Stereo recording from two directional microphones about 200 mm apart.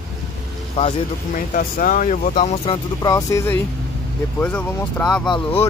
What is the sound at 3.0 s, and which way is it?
Speech, 15° left (ahead or behind).